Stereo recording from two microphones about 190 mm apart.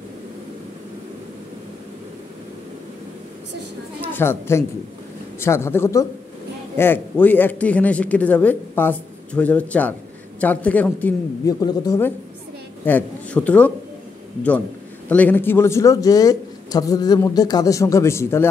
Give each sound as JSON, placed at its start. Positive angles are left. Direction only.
{"t": 4.0, "sound": "speech", "side_deg": 10}
{"t": 15.0, "sound": "speech", "side_deg": 10}